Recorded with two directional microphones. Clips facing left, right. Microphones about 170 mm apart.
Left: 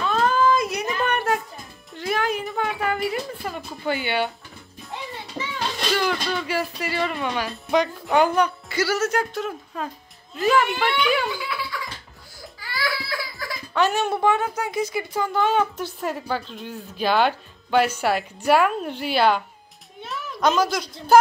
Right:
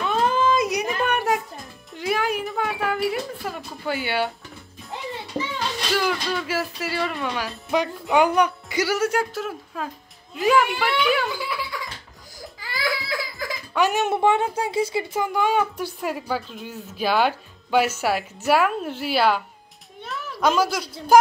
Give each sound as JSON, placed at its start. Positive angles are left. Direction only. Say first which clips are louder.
{"t": 0.0, "sound": "a sound", "louder": "left 1 dB", "side_deg": -15}
{"t": 5.9, "sound": "speech", "louder": "right 1 dB", "side_deg": -5}
{"t": 8.4, "sound": "a woman's voice", "louder": "right 1 dB", "side_deg": -15}
{"t": 12.7, "sound": "baby cry", "louder": "right 1 dB", "side_deg": -20}
{"t": 13.4, "sound": "speech", "louder": "even", "side_deg": -15}
{"t": 15.2, "sound": "a woman's voice", "louder": "left 2 dB", "side_deg": -15}